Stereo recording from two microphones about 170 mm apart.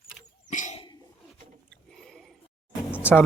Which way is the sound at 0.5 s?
45° left (ahead or behind).